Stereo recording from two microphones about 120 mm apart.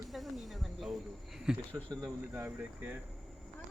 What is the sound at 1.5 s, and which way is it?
Speech, 5° right (ahead or behind).